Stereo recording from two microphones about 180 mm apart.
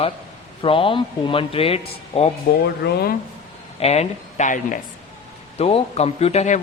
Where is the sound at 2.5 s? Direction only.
60° left (ahead or behind).